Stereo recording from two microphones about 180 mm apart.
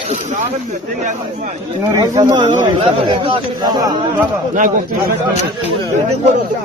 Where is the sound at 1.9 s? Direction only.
20° right (ahead or behind).